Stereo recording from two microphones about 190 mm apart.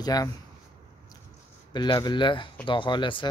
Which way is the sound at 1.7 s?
25° left (ahead or behind).